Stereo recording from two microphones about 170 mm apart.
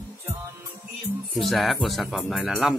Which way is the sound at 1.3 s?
Centre (ahead or behind).